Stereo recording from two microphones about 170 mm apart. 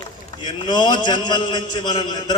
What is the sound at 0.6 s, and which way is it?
A man's voice, 25° left (ahead or behind).